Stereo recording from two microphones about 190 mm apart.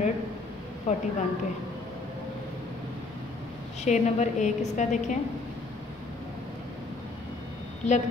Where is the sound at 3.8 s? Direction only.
40° left (ahead or behind).